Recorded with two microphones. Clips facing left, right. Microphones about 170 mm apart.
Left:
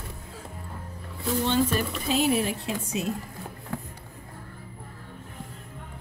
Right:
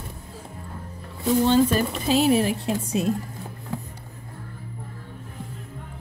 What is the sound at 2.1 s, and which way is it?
Speech, 75° right (ahead or behind).